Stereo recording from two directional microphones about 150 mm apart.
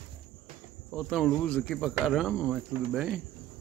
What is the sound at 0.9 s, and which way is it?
Speech, centre (ahead or behind).